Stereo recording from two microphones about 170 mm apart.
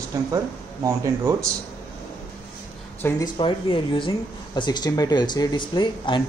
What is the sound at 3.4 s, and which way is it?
Speech, 30° left (ahead or behind).